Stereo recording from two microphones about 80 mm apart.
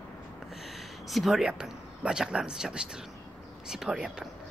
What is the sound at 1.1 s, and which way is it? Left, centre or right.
Speech, centre.